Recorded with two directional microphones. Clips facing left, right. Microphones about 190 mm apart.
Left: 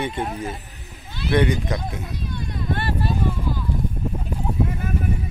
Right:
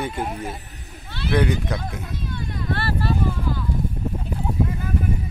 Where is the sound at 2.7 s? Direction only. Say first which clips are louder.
Even; 15° left (ahead or behind).